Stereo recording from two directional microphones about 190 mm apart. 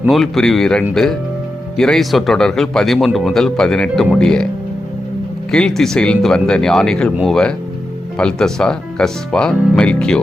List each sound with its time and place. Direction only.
0.0 s speech: centre (ahead or behind)
5.5 s speech: 5° left (ahead or behind)